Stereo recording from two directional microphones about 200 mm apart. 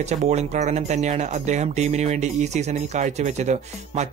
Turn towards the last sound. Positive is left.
turn(degrees=-35)  # may be behind; listen again after turning